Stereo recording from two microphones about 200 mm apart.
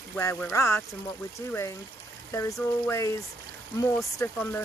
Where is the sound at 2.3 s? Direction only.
15° left (ahead or behind).